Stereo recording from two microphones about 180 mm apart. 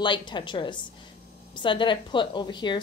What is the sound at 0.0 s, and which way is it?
A woman's voice, 25° left (ahead or behind).